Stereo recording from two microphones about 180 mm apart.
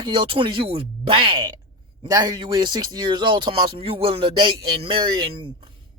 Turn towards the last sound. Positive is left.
turn(degrees=-25)  # may be behind; listen again after turning